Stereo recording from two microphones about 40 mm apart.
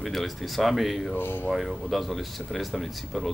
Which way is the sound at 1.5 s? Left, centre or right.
Centre.